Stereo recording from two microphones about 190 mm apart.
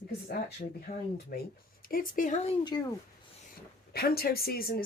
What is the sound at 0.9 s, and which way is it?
A woman's voice, 50° left (ahead or behind).